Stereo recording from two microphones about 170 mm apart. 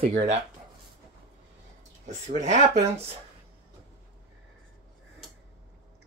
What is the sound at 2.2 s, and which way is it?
Speech, 45° right (ahead or behind).